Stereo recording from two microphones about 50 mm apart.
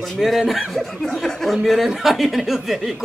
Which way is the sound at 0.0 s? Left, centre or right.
Centre.